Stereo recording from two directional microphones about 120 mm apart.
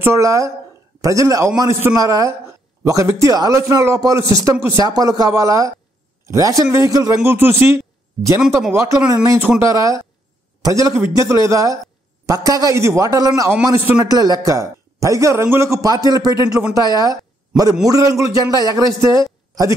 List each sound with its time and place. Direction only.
0.0 s a man's voice: 25° right (ahead or behind)